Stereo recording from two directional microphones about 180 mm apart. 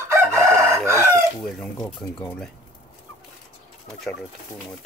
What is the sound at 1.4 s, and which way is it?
Speech, centre (ahead or behind).